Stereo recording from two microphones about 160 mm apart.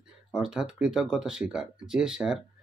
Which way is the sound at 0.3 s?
5° right (ahead or behind).